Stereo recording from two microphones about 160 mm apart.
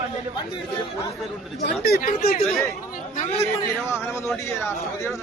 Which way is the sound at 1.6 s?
75° left (ahead or behind).